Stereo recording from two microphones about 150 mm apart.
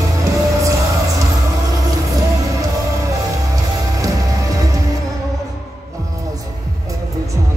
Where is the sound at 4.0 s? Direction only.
25° right (ahead or behind).